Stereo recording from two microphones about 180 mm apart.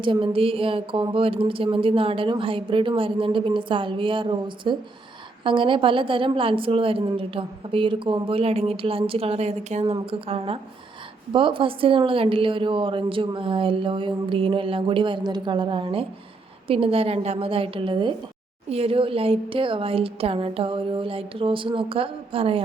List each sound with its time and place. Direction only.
0.0 s a woman's voice: 25° right (ahead or behind)